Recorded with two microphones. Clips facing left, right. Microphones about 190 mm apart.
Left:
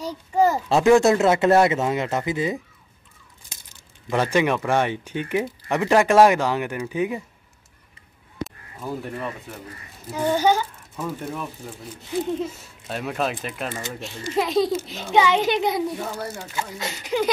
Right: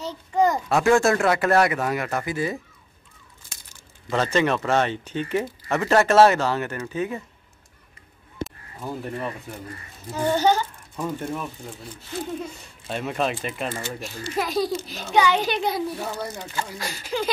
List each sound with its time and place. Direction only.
0.0 s a child's voice: 10° left (ahead or behind)
0.7 s speech: 20° left (ahead or behind)
4.1 s speech: 10° left (ahead or behind)
8.5 s speech: centre (ahead or behind)
10.1 s speech: 10° left (ahead or behind)
12.4 s speech: centre (ahead or behind)
13.7 s speech: 20° left (ahead or behind)